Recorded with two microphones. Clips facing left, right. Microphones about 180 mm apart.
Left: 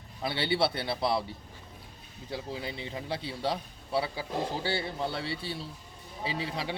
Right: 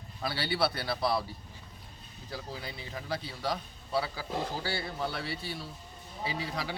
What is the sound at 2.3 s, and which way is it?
A man's voice, 25° left (ahead or behind).